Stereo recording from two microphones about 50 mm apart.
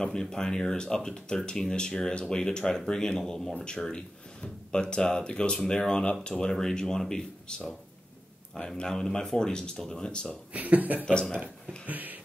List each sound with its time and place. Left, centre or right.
0.0 s speech: centre
10.5 s speech: right
11.1 s speech: centre
11.8 s a sound: right